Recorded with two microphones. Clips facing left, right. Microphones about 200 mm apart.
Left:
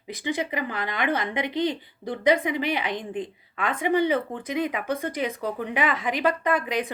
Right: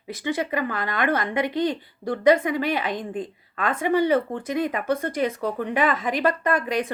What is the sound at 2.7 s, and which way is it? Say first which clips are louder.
Speech: right 2 dB; 45° right (ahead or behind).